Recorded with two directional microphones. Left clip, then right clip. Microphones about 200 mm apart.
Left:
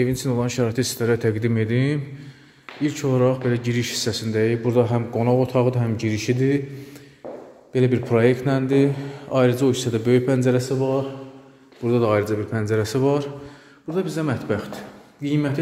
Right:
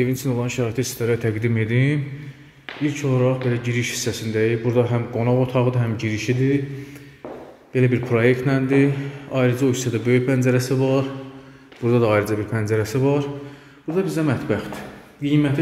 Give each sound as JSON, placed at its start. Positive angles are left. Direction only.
{"t": 0.0, "sound": "speech", "side_deg": 20}
{"t": 3.0, "sound": "speech", "side_deg": 25}
{"t": 7.7, "sound": "speech", "side_deg": 10}
{"t": 10.6, "sound": "speech", "side_deg": -5}
{"t": 12.8, "sound": "speech", "side_deg": 15}
{"t": 13.9, "sound": "speech", "side_deg": 0}